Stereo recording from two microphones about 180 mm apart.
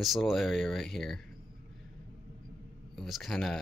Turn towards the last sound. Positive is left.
turn(degrees=0)  # may be behind; listen again after turning